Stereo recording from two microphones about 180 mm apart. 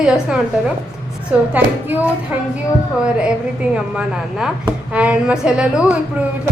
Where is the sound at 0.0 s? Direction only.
5° right (ahead or behind).